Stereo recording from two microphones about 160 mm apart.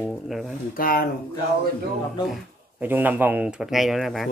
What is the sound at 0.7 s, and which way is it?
Speech, 65° left (ahead or behind).